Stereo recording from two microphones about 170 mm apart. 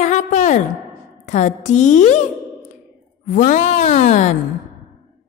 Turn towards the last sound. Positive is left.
turn(degrees=45)  # may be behind; listen again after turning